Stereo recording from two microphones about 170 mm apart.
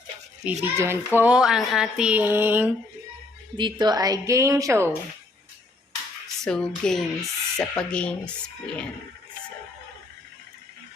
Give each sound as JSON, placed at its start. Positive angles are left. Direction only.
{"t": 0.4, "sound": "a child's voice", "side_deg": -15}
{"t": 3.6, "sound": "a woman's voice", "side_deg": -25}
{"t": 6.4, "sound": "speech", "side_deg": 5}